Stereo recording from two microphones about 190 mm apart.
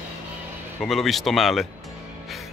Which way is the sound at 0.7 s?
Centre (ahead or behind).